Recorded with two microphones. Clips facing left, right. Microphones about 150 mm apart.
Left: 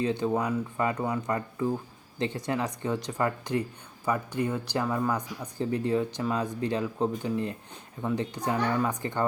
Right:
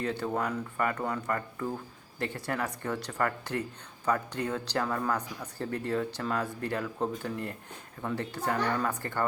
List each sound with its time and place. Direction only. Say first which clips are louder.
0.0 s speech: left 4 dB; 15° left (ahead or behind)